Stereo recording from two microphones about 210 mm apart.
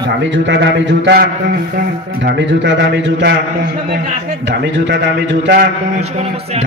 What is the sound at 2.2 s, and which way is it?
A man's voice, 60° right (ahead or behind).